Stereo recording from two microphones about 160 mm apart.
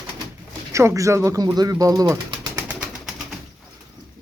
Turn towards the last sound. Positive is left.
turn(degrees=-5)  # may be behind; listen again after turning